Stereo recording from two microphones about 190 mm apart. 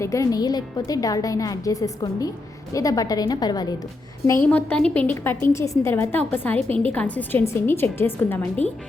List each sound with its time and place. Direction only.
0.0 s a woman's voice: 15° left (ahead or behind)
4.4 s a woman's voice: 5° left (ahead or behind)